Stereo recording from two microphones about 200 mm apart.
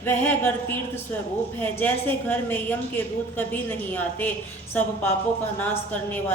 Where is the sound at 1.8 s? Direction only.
10° left (ahead or behind).